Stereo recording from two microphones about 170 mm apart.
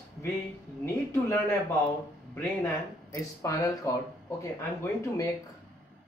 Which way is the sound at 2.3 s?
15° left (ahead or behind).